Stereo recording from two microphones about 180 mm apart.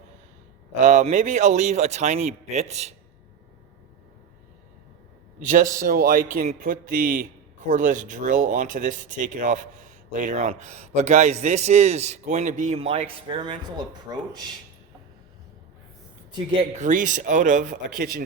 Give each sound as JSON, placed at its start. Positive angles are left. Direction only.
{"t": 0.8, "sound": "speech", "side_deg": -40}
{"t": 5.4, "sound": "a man's voice", "side_deg": -45}
{"t": 16.6, "sound": "a man's voice", "side_deg": -45}